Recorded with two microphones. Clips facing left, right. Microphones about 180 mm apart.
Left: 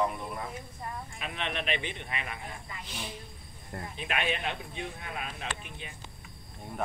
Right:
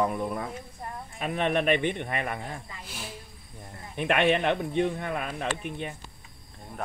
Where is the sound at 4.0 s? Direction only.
65° right (ahead or behind).